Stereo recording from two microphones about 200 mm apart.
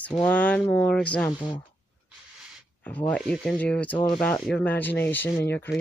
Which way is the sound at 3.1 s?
5° left (ahead or behind).